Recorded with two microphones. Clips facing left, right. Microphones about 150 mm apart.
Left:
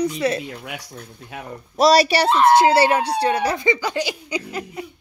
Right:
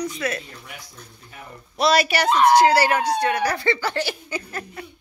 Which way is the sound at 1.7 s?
35° left (ahead or behind).